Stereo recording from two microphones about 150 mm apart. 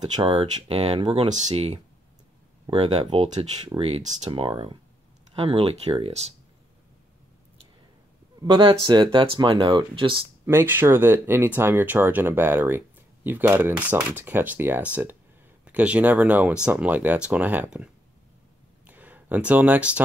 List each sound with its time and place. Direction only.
0.1 s speech: 40° right (ahead or behind)
1.3 s speech: 45° right (ahead or behind)
8.4 s speech: 35° right (ahead or behind)
10.4 s speech: 15° right (ahead or behind)
18.9 s a sound: 10° right (ahead or behind)